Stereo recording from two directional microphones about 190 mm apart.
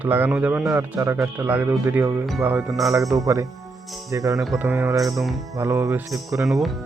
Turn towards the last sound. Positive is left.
turn(degrees=0)  # may be behind; listen again after turning